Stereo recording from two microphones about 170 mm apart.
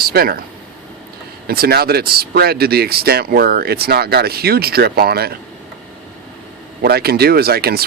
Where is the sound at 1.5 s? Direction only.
65° right (ahead or behind).